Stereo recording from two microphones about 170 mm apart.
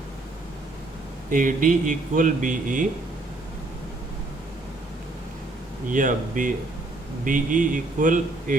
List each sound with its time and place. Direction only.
1.3 s speech: 50° right (ahead or behind)
5.9 s speech: 50° right (ahead or behind)